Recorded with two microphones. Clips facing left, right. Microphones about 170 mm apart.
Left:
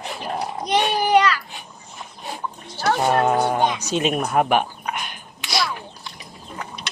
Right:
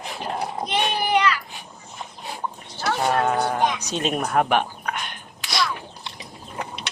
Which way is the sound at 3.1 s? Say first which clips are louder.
Left 3 dB; 25° left (ahead or behind).